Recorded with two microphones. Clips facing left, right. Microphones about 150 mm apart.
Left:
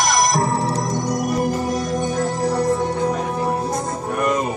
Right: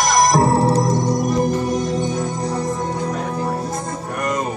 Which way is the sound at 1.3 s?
5° left (ahead or behind).